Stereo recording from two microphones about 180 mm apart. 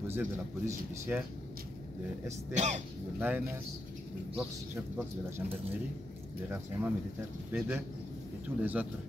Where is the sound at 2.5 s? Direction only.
40° right (ahead or behind).